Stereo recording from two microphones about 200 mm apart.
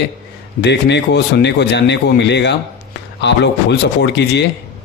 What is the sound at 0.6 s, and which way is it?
Speech, 60° left (ahead or behind).